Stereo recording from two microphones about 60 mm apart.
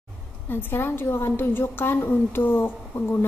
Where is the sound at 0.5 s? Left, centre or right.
Left.